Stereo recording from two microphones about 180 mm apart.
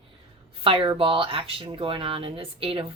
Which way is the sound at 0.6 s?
30° right (ahead or behind).